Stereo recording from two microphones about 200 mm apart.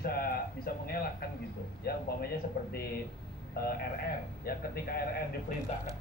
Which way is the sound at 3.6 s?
50° left (ahead or behind).